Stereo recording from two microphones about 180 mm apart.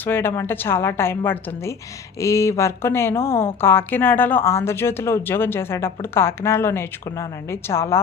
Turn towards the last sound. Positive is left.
turn(degrees=15)  # may be behind; listen again after turning